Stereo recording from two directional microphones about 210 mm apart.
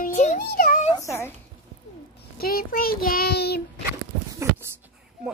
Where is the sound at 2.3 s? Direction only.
45° left (ahead or behind).